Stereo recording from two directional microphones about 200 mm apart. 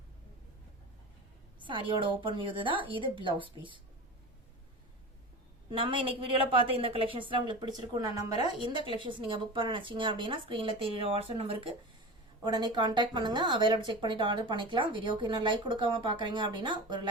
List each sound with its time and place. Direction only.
1.6 s a woman's voice: 25° right (ahead or behind)
5.7 s a woman's voice: 25° right (ahead or behind)